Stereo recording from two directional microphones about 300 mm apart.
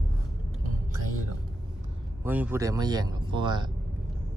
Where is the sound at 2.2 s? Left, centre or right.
Centre.